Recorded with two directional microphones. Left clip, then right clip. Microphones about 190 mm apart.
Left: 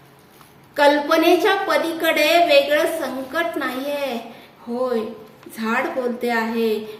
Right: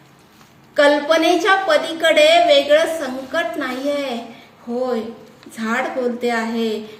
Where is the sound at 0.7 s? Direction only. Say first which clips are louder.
Right 2 dB; 5° left (ahead or behind).